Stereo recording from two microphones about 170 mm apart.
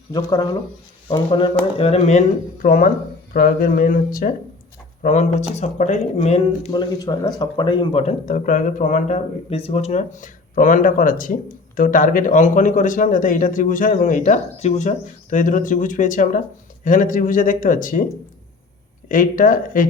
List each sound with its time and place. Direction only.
0.1 s speech: 20° left (ahead or behind); by 4.4 s 55° left (ahead or behind)
5.0 s speech: 45° left (ahead or behind); by 8.0 s 25° left (ahead or behind)
8.0 s speech: 50° left (ahead or behind)